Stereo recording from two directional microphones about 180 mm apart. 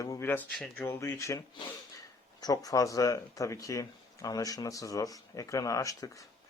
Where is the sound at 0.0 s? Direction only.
15° left (ahead or behind).